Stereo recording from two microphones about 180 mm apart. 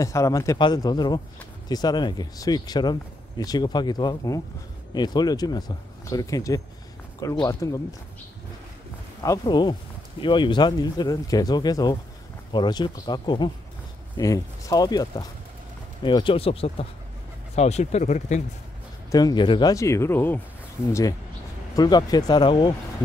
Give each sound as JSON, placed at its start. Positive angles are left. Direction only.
{"t": 0.0, "sound": "speech", "side_deg": 15}
{"t": 9.2, "sound": "speech", "side_deg": 20}
{"t": 19.0, "sound": "speech", "side_deg": 20}
{"t": 21.7, "sound": "speech", "side_deg": 20}